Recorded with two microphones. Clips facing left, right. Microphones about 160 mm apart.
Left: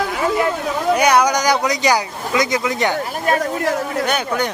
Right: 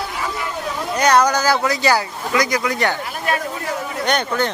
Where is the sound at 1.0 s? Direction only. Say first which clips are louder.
Right 2 dB; 10° left (ahead or behind).